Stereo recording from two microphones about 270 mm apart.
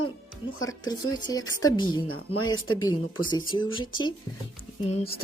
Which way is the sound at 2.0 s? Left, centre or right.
Left.